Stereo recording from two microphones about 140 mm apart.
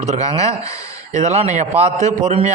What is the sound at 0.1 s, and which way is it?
A man's voice, 50° right (ahead or behind).